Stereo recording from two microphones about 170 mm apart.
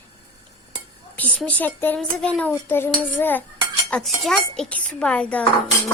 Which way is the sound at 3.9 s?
Centre (ahead or behind).